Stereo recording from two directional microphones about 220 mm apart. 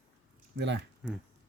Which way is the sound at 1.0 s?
5° right (ahead or behind).